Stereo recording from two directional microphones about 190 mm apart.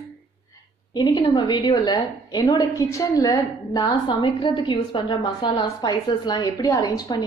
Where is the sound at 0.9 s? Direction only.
20° left (ahead or behind).